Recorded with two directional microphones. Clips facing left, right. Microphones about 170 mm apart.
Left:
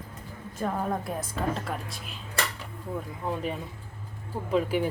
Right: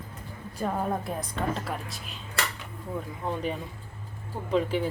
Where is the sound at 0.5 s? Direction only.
10° right (ahead or behind).